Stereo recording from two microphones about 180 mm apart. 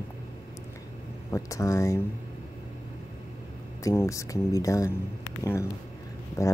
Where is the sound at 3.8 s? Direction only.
15° left (ahead or behind).